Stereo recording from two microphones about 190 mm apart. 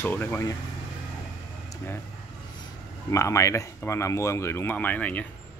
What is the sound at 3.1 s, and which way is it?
Speech, 15° left (ahead or behind).